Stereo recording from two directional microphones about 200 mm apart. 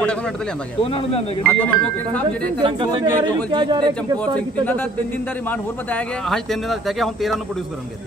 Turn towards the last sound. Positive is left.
turn(degrees=0)  # may be behind; listen again after turning